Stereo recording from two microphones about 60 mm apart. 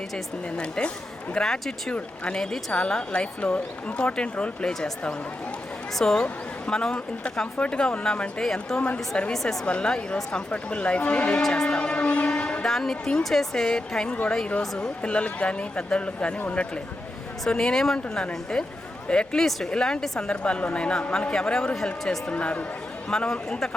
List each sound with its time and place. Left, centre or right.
0.5 s speech: centre
9.3 s a woman's voice: centre
9.6 s speech: centre
12.6 s speech: centre; by 16.6 s left
17.5 s speech: centre
22.3 s speech: left